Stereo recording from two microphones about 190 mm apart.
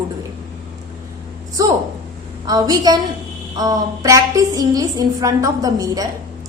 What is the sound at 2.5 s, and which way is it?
A woman's voice, 20° right (ahead or behind).